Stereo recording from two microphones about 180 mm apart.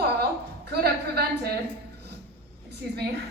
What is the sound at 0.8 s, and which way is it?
Speech, 60° right (ahead or behind).